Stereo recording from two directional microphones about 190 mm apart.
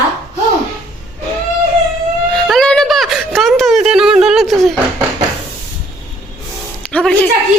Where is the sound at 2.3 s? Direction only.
5° left (ahead or behind).